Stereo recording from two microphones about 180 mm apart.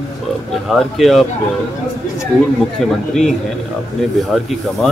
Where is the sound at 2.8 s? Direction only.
Centre (ahead or behind).